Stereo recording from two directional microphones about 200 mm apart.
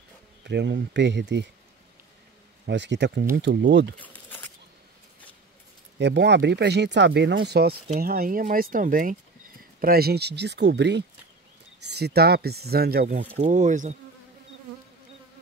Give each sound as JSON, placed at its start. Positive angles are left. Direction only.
{"t": 0.4, "sound": "speech", "side_deg": -60}
{"t": 2.6, "sound": "speech", "side_deg": -60}
{"t": 4.0, "sound": "a sound", "side_deg": 10}
{"t": 5.9, "sound": "speech", "side_deg": -60}
{"t": 13.4, "sound": "speech", "side_deg": -40}